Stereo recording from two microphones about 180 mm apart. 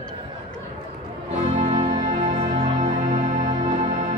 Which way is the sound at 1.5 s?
35° right (ahead or behind).